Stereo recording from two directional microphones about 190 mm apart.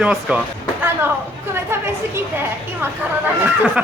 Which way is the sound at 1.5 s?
15° right (ahead or behind).